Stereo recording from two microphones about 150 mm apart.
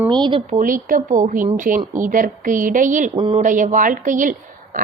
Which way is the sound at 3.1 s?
35° right (ahead or behind).